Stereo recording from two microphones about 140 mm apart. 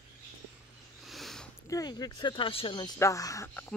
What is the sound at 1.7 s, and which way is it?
Speech, 30° left (ahead or behind).